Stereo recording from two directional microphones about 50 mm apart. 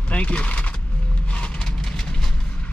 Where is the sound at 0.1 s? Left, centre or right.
Left.